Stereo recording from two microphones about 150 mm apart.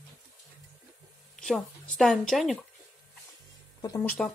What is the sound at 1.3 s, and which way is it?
Speech, 5° left (ahead or behind).